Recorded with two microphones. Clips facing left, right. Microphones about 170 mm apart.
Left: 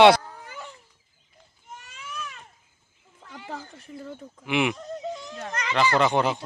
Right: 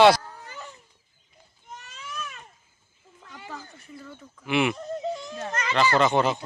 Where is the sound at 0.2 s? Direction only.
10° left (ahead or behind).